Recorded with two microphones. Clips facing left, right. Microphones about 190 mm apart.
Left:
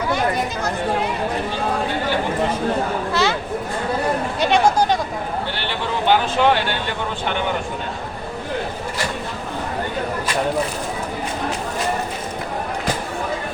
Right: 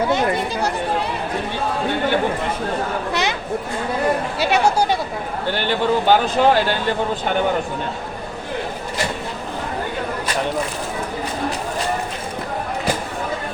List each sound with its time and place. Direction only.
3.1 s a sound: 15° right (ahead or behind)
4.4 s chatter: 5° right (ahead or behind)
5.5 s speech: 45° right (ahead or behind)